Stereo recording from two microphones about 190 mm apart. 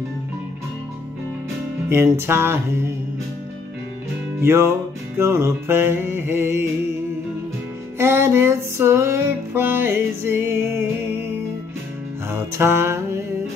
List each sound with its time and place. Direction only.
1.9 s music: 10° right (ahead or behind)
4.4 s music: 15° right (ahead or behind)
8.0 s music: 15° right (ahead or behind)
12.3 s mantra: 15° right (ahead or behind)